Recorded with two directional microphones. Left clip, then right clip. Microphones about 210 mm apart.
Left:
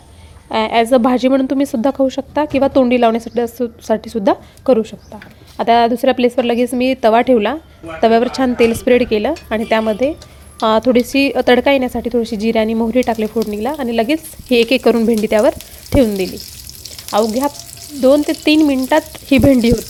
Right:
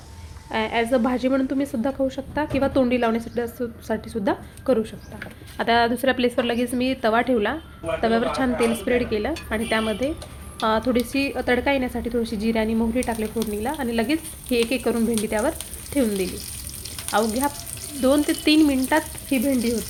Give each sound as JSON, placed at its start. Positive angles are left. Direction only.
{"t": 0.5, "sound": "a woman's voice", "side_deg": 40}
{"t": 17.1, "sound": "a woman's voice", "side_deg": 35}